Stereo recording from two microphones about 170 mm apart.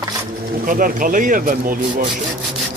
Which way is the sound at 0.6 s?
55° right (ahead or behind).